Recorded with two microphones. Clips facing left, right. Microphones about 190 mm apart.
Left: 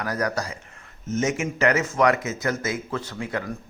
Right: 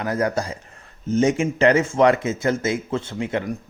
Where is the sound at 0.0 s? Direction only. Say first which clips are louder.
Right 4 dB; 25° right (ahead or behind).